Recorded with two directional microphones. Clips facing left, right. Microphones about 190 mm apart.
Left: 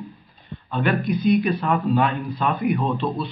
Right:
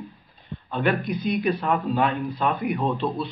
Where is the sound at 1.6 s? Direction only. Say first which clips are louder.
Left 2 dB; 20° right (ahead or behind).